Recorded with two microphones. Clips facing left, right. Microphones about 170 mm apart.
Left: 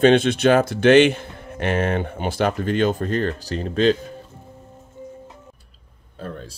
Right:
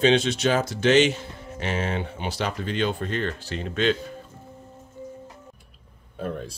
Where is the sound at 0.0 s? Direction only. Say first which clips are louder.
Left 5 dB; 55° left (ahead or behind); by 3.9 s 35° left (ahead or behind).